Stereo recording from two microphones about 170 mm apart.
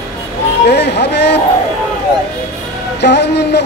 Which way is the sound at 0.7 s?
80° left.